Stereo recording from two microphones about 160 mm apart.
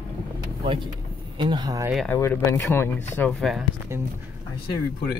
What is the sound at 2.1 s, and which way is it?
Speech, 15° left (ahead or behind).